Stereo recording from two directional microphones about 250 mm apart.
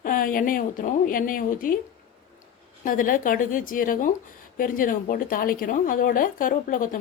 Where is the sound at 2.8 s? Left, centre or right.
Left.